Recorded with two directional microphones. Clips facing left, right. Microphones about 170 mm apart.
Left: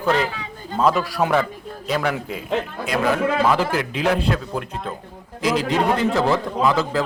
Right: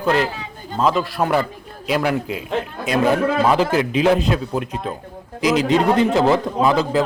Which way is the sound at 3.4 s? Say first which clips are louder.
Right 3 dB; 20° right (ahead or behind).